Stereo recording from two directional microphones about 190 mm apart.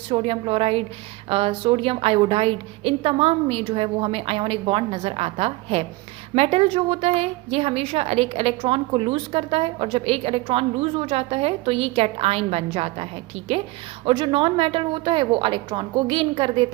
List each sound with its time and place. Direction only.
0.1 s a woman's voice: 30° right (ahead or behind)